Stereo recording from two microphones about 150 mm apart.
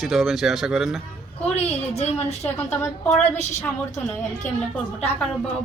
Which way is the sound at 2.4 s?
15° left (ahead or behind).